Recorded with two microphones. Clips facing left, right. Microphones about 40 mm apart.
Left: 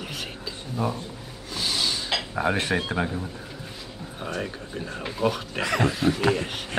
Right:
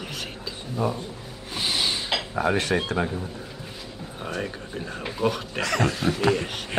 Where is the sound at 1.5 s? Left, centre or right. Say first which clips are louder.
Right 1 dB; right.